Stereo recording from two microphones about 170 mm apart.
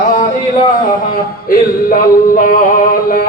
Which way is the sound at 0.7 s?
55° left (ahead or behind).